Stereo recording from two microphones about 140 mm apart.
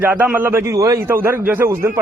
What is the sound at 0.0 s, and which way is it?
A man's voice, 15° right (ahead or behind).